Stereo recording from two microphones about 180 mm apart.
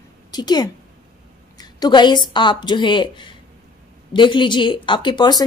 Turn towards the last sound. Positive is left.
turn(degrees=25)  # may be behind; listen again after turning